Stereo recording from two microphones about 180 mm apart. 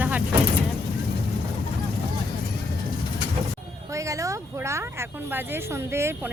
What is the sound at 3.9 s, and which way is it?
Speech, 15° right (ahead or behind).